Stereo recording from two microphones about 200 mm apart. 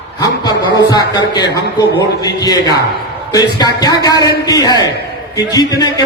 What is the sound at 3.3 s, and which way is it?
A man's voice, 20° left (ahead or behind).